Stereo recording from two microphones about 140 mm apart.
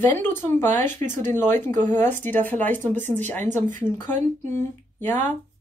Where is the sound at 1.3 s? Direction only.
15° left (ahead or behind).